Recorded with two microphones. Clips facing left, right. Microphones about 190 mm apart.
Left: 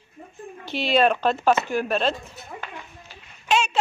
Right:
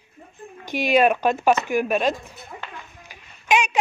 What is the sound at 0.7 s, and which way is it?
Speech, 15° right (ahead or behind).